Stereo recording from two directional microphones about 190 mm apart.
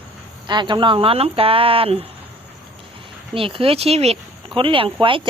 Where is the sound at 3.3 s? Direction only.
30° right (ahead or behind).